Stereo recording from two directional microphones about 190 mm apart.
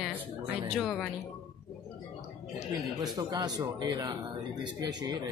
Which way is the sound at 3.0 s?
20° right (ahead or behind).